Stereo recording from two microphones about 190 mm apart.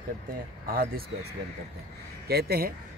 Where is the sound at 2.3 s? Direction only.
55° right (ahead or behind).